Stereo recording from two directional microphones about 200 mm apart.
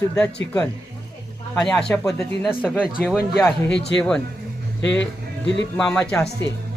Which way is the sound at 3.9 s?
5° left (ahead or behind).